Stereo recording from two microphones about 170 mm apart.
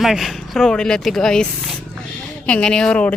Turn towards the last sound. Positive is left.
turn(degrees=5)  # may be behind; listen again after turning